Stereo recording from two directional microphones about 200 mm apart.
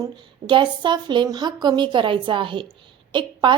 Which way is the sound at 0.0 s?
25° right (ahead or behind).